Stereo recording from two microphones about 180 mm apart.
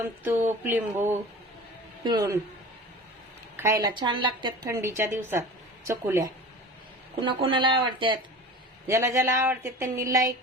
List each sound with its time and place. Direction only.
0.3 s a woman's voice: 10° right (ahead or behind)
3.6 s a woman's voice: 15° right (ahead or behind)
4.8 s a woman's voice: 15° right (ahead or behind)
7.2 s a woman's voice: 30° right (ahead or behind)
8.9 s speech: 15° right (ahead or behind)